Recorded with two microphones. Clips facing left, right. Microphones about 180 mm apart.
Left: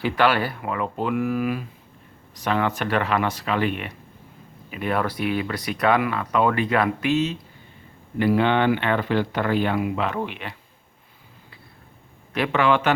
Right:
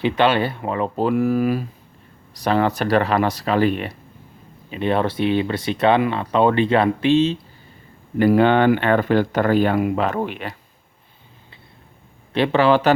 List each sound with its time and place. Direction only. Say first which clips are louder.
0.0 s speech: right 3 dB; 20° right (ahead or behind)
8.2 s speech: right 5 dB; 45° right (ahead or behind)
12.3 s speech: right 4 dB; 30° right (ahead or behind)